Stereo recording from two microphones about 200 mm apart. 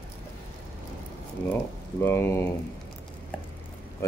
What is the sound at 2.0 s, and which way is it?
Speech, 10° left (ahead or behind).